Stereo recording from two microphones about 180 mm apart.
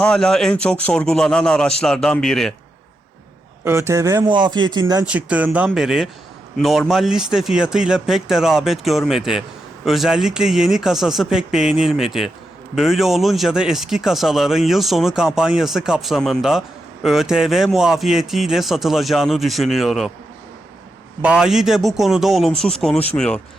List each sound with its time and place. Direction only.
0.0 s speech: 5° left (ahead or behind)
3.6 s speech: 15° right (ahead or behind)
5.0 s speech: 5° right (ahead or behind)
21.2 s speech: 5° right (ahead or behind)